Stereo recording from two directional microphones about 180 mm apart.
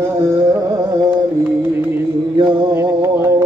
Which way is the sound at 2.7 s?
15° right (ahead or behind).